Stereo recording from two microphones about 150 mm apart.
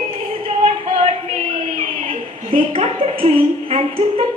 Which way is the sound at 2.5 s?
40° right (ahead or behind).